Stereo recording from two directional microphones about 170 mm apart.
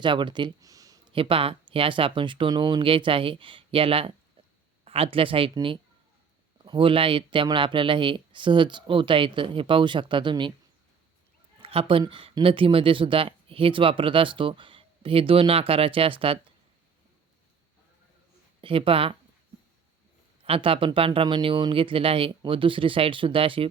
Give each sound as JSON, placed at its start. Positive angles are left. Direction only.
{"t": 0.0, "sound": "speech", "side_deg": -30}
{"t": 1.1, "sound": "speech", "side_deg": -30}
{"t": 11.6, "sound": "speech", "side_deg": -35}
{"t": 18.6, "sound": "speech", "side_deg": -30}
{"t": 20.4, "sound": "speech", "side_deg": -35}